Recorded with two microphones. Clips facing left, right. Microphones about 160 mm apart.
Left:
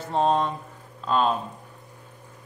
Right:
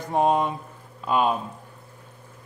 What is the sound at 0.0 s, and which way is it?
A man's voice, 15° right (ahead or behind).